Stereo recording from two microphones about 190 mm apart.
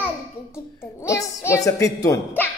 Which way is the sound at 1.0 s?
15° left (ahead or behind).